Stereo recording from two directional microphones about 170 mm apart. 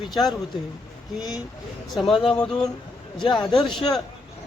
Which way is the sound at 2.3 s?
5° left (ahead or behind).